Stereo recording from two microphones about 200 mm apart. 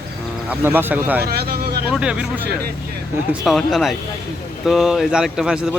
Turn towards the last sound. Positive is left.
turn(degrees=-5)  # may be behind; listen again after turning